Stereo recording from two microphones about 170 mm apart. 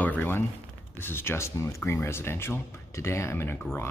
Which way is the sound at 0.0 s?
10° left (ahead or behind).